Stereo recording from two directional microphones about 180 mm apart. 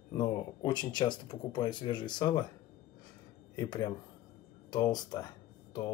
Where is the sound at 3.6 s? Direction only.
20° left (ahead or behind).